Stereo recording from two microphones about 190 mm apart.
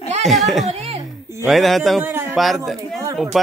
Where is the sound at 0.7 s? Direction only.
35° right (ahead or behind).